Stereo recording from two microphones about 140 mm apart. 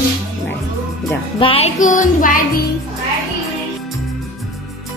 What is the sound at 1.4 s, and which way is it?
Music, 40° left (ahead or behind).